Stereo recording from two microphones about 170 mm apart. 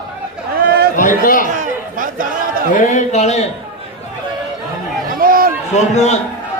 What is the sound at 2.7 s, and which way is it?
Speech, 50° left (ahead or behind).